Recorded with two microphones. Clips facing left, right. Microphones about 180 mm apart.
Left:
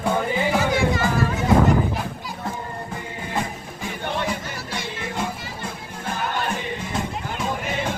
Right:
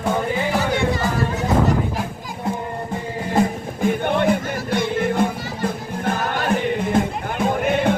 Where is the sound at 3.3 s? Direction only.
50° right (ahead or behind).